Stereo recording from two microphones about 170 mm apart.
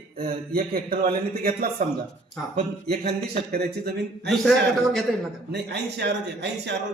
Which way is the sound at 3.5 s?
65° right (ahead or behind).